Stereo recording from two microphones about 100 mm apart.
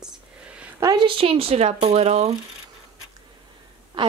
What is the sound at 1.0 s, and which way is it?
Speech, 65° right (ahead or behind).